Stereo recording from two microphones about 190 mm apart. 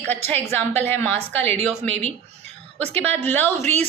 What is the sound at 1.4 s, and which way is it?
A woman's voice, 35° right (ahead or behind).